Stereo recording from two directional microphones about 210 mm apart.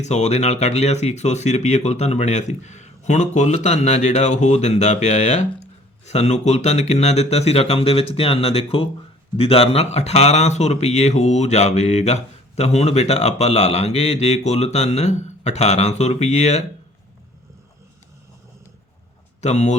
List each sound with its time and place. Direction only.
0.0 s speech: 30° left (ahead or behind)
19.4 s speech: 35° left (ahead or behind)